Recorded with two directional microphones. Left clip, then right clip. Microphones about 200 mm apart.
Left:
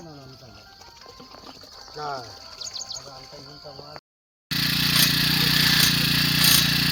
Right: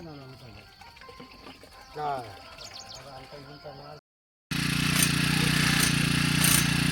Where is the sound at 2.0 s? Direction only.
20° right (ahead or behind).